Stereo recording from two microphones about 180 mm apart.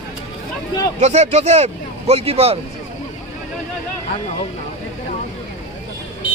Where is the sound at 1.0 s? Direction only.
40° right (ahead or behind).